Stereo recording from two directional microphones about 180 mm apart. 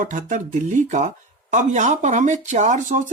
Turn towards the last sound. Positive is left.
turn(degrees=-40)  # may be behind; listen again after turning